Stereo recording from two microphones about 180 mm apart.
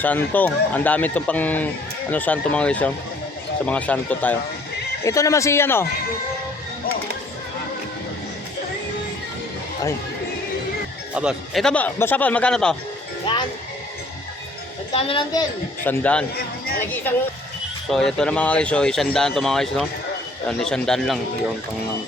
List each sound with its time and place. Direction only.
0.0 s speech: 10° left (ahead or behind)
11.1 s speech: 5° right (ahead or behind)
13.3 s music: 25° left (ahead or behind)
14.9 s a woman's voice: 30° left (ahead or behind)
15.8 s speech: 10° left (ahead or behind)